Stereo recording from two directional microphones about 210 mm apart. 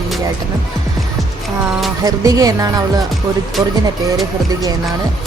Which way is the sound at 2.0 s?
15° right (ahead or behind).